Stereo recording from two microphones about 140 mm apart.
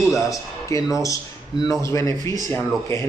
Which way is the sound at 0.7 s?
20° left (ahead or behind).